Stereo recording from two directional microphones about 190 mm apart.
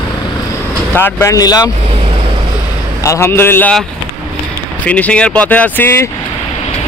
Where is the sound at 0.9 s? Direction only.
15° left (ahead or behind).